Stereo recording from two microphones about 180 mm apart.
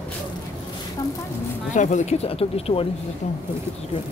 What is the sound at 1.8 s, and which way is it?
Speech, 40° left (ahead or behind).